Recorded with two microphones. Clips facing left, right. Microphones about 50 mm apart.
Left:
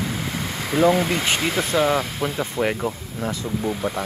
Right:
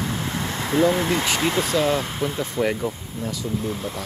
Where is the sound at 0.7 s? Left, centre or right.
Centre.